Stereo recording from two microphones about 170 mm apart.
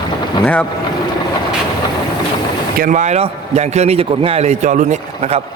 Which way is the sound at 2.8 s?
45° right (ahead or behind).